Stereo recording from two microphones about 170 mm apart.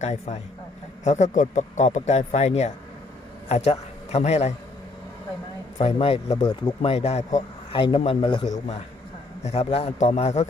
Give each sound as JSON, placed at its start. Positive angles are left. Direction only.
{"t": 0.0, "sound": "a man's voice", "side_deg": 40}
{"t": 5.7, "sound": "a man's voice", "side_deg": 35}
{"t": 7.8, "sound": "a man's voice", "side_deg": 30}